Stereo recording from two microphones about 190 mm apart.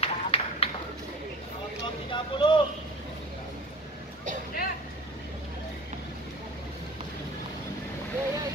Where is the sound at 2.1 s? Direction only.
25° left (ahead or behind).